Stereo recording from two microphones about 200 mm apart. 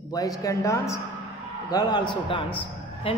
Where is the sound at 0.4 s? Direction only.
15° left (ahead or behind).